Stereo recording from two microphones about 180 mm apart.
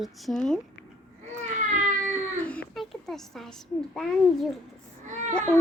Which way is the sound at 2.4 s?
5° left (ahead or behind).